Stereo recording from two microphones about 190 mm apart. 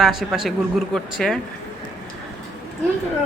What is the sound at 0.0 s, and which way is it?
A woman's voice, centre (ahead or behind).